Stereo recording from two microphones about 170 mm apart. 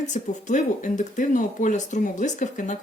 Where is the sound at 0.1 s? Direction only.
45° left (ahead or behind).